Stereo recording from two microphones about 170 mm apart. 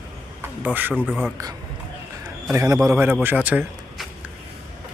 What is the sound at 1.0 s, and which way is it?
Speech, 5° left (ahead or behind).